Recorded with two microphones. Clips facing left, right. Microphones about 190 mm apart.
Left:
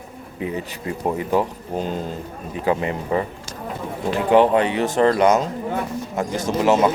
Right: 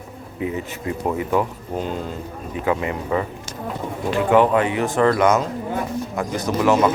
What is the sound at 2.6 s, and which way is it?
Speech, 30° left (ahead or behind).